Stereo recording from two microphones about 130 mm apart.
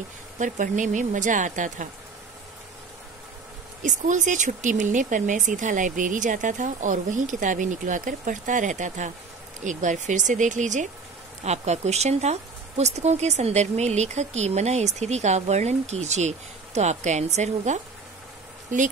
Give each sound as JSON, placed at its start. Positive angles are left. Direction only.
{"t": 0.4, "sound": "speech", "side_deg": -75}
{"t": 3.8, "sound": "speech", "side_deg": -75}
{"t": 11.4, "sound": "speech", "side_deg": -60}